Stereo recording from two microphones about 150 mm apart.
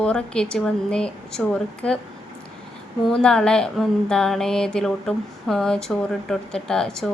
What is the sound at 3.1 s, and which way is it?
Speech, 5° left (ahead or behind).